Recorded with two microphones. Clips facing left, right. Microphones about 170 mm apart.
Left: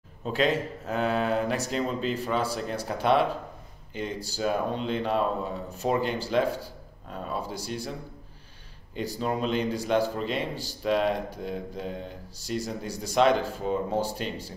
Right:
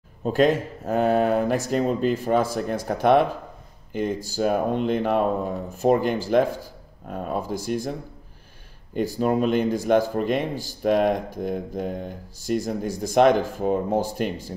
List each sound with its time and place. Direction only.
0.2 s speech: 45° right (ahead or behind)
8.9 s speech: 50° right (ahead or behind)